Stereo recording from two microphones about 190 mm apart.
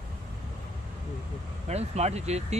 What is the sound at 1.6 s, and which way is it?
Speech, 35° right (ahead or behind).